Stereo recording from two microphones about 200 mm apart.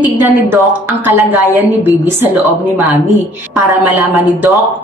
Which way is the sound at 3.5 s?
15° right (ahead or behind).